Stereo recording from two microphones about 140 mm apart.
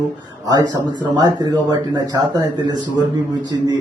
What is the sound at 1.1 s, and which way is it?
A man's voice, 30° right (ahead or behind).